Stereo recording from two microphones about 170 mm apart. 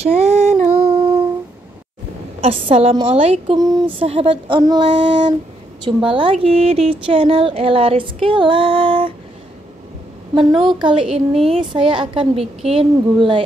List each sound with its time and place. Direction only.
0.0 s female singing: 40° right (ahead or behind)
2.4 s a child's voice: 35° right (ahead or behind)
10.6 s a child's voice: 25° right (ahead or behind)